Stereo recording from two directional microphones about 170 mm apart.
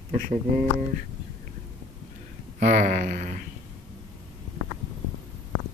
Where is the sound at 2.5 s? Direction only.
50° right (ahead or behind).